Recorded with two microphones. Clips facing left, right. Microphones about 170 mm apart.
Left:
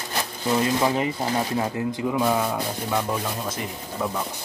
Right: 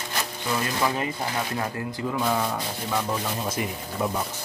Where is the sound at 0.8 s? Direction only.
25° left (ahead or behind); by 2.5 s 5° left (ahead or behind).